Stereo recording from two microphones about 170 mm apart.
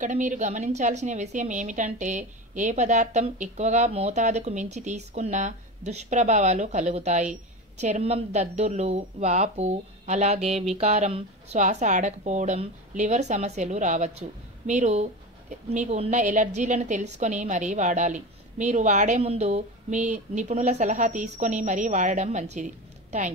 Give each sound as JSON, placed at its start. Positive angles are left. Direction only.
{"t": 0.0, "sound": "a woman's voice", "side_deg": -45}